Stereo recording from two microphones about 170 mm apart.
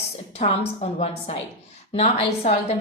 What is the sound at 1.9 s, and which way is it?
Speech, 40° left (ahead or behind).